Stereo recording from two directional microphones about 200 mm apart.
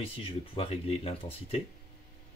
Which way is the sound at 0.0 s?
30° left (ahead or behind).